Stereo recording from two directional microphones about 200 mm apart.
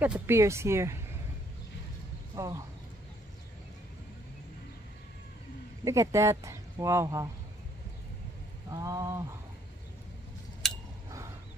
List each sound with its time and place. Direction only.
0.0 s speech: 10° right (ahead or behind)
2.3 s speech: 15° right (ahead or behind)
5.9 s speech: 15° right (ahead or behind)
8.6 s speech: 15° right (ahead or behind)
10.6 s a sound: centre (ahead or behind)